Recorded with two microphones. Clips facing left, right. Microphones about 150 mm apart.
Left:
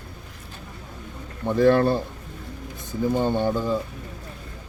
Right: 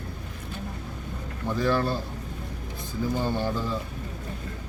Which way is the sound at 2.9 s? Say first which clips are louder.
Left 5 dB; 20° left (ahead or behind).